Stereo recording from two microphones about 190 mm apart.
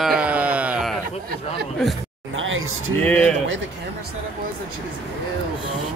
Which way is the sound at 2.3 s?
90° right.